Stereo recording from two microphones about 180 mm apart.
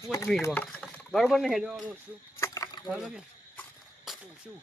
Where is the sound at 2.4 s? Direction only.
20° left (ahead or behind).